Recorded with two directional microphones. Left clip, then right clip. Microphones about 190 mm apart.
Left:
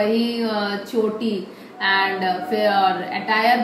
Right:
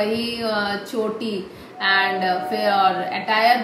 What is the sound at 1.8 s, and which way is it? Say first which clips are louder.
A woman's voice: even; 20° right (ahead or behind).